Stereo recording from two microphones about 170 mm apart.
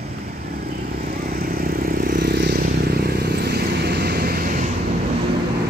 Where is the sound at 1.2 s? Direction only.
60° right (ahead or behind).